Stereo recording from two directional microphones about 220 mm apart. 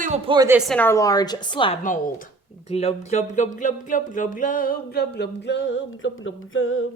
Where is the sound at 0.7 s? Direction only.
10° left (ahead or behind).